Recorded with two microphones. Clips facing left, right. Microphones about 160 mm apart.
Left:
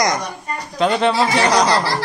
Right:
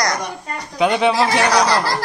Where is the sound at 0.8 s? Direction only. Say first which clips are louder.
Right 1 dB; 5° right (ahead or behind).